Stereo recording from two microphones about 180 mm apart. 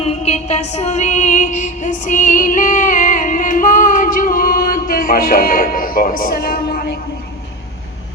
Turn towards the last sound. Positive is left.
turn(degrees=55)  # may be behind; listen again after turning